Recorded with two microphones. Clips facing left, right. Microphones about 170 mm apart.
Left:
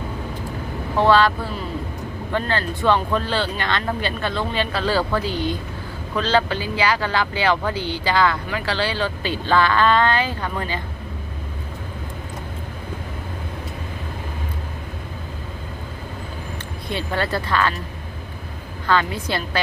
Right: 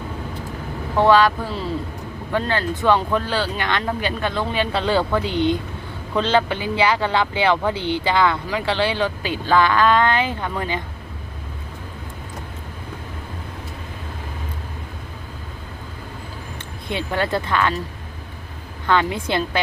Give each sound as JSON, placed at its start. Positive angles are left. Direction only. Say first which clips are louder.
{"t": 0.9, "sound": "speech", "louder": "right 1 dB", "side_deg": -15}
{"t": 2.3, "sound": "speech", "louder": "right 2 dB", "side_deg": -15}
{"t": 16.9, "sound": "speech", "louder": "right 2 dB", "side_deg": -15}
{"t": 18.9, "sound": "speech", "louder": "right 1 dB", "side_deg": -20}